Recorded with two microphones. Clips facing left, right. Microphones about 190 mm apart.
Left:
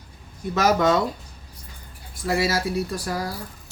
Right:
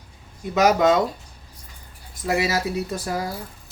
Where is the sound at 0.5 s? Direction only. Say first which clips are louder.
Right 2 dB; 20° right (ahead or behind).